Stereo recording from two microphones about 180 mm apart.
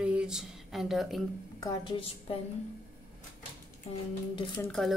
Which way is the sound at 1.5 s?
25° left (ahead or behind).